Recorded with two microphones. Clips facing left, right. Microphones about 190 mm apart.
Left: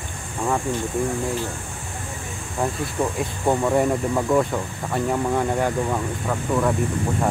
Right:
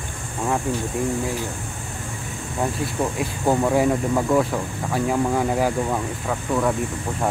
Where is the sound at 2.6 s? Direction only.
Centre (ahead or behind).